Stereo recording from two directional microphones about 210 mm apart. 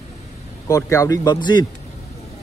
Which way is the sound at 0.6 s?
15° left (ahead or behind).